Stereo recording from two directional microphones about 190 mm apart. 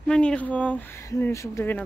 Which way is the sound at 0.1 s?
5° left (ahead or behind).